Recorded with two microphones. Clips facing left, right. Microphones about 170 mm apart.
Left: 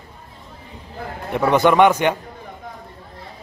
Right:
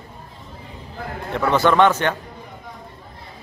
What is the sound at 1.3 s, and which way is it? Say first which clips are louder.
Speech: left 2 dB; 15° left (ahead or behind).